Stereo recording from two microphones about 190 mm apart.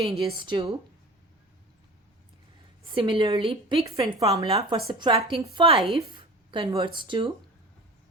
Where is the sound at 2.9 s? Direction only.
25° right (ahead or behind).